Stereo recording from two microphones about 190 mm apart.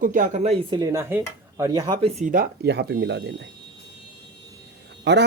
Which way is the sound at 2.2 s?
50° right (ahead or behind).